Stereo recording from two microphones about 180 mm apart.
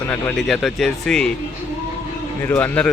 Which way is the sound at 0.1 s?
10° left (ahead or behind).